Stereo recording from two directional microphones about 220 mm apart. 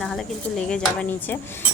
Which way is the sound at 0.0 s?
Centre (ahead or behind).